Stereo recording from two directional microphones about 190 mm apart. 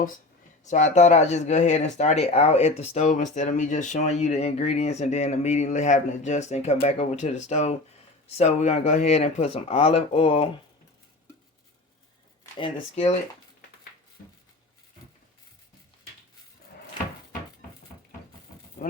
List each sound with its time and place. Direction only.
0.6 s speech: 40° left (ahead or behind)
12.4 s shuffling cards: 30° left (ahead or behind)